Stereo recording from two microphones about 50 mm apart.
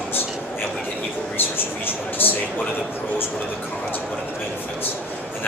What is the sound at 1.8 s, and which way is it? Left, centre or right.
Speech, left.